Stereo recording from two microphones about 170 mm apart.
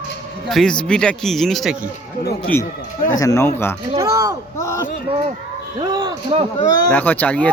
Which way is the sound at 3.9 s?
20° right (ahead or behind).